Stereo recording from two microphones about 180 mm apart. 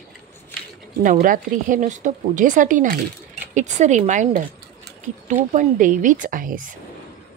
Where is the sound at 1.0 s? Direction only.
50° right (ahead or behind).